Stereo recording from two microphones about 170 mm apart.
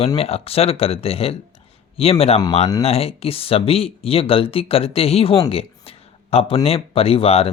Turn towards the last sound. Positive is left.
turn(degrees=35)  # may be behind; listen again after turning